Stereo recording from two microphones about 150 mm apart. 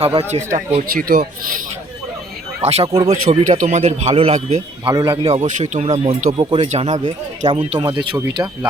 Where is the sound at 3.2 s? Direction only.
60° right (ahead or behind); by 8.7 s 30° right (ahead or behind).